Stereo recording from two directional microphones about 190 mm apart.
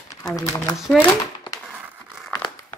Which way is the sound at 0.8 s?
Centre (ahead or behind).